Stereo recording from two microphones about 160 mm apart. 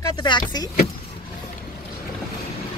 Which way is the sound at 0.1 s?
30° left (ahead or behind).